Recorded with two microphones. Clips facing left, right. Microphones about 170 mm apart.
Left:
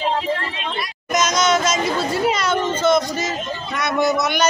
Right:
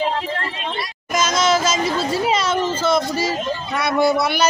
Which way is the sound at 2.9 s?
30° right (ahead or behind).